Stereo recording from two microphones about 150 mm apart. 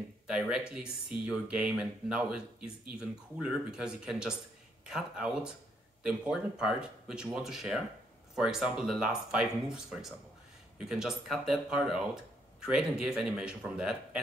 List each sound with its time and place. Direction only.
0.3 s speech: 5° right (ahead or behind)